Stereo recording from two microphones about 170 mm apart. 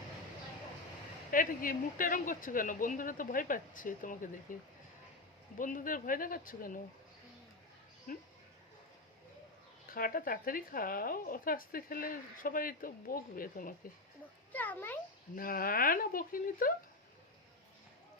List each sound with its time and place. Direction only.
1.3 s speech: 55° left (ahead or behind)
9.9 s a woman's voice: 55° left (ahead or behind)
14.5 s a child's voice: 10° left (ahead or behind)
15.4 s a woman's voice: 60° left (ahead or behind)